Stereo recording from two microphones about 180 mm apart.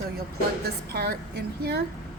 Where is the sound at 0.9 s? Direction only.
60° right (ahead or behind).